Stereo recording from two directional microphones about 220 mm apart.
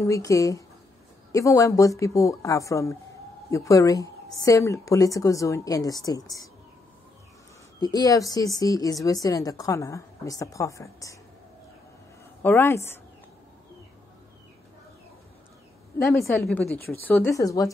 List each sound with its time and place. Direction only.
0.0 s a woman's voice: 15° left (ahead or behind)
7.8 s a woman's voice: 15° left (ahead or behind)
12.4 s a woman's voice: 10° left (ahead or behind)
16.0 s a woman's voice: 15° left (ahead or behind)